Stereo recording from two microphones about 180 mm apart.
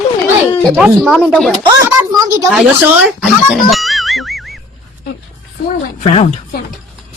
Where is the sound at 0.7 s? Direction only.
Centre (ahead or behind).